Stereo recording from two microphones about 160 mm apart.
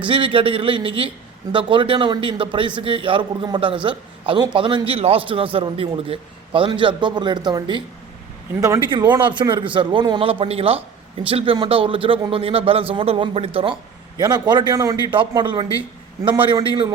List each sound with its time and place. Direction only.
0.1 s a man's voice: 30° right (ahead or behind)
8.9 s a man's voice: 25° right (ahead or behind)
14.2 s a man's voice: 25° right (ahead or behind)